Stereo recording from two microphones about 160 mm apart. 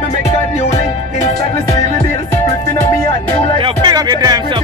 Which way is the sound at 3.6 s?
25° right (ahead or behind).